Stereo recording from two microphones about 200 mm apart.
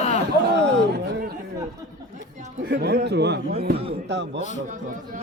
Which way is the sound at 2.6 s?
55° right (ahead or behind).